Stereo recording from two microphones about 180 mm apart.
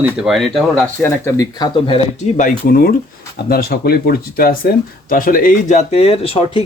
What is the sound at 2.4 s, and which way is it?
Speech, 55° left (ahead or behind).